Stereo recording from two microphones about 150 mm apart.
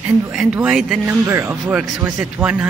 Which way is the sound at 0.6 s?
Centre (ahead or behind).